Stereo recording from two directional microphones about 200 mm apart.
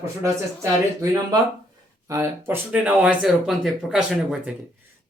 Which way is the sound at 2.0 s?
15° right (ahead or behind).